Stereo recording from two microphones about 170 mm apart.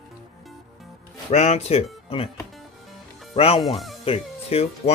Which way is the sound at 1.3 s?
40° left (ahead or behind).